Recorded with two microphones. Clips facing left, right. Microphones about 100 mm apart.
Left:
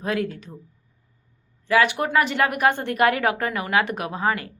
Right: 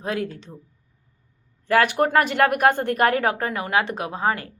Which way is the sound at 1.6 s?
50° right (ahead or behind).